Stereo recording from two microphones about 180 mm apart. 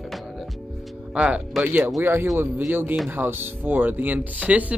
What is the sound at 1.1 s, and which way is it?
Speech, 5° right (ahead or behind).